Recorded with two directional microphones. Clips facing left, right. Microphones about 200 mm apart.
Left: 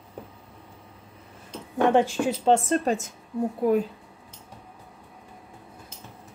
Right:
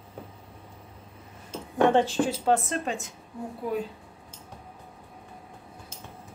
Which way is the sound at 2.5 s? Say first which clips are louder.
Left 4 dB; 30° left (ahead or behind).